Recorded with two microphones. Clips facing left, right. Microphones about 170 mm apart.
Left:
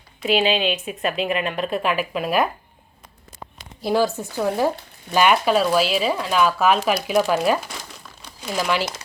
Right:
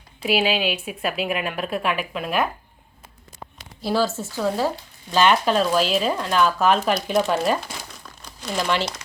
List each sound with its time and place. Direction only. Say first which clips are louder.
0.2 s a woman's voice: left 2 dB; 5° right (ahead or behind)
3.8 s speech: left 2 dB; 15° left (ahead or behind)
8.0 s crumpling: even; 5° left (ahead or behind)